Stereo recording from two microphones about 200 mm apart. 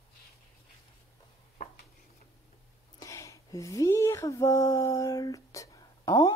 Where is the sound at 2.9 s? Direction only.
15° left (ahead or behind).